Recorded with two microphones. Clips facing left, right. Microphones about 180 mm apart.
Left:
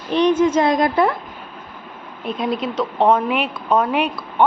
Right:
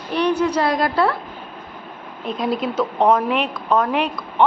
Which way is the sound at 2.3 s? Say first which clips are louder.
Even; centre (ahead or behind).